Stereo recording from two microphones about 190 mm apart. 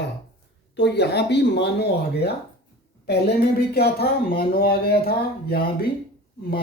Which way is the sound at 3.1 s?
60° left (ahead or behind).